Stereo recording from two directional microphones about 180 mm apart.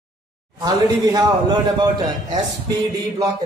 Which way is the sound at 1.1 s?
20° right (ahead or behind).